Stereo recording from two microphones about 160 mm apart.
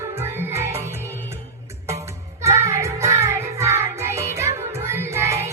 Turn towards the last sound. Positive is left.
turn(degrees=-20)  # may be behind; listen again after turning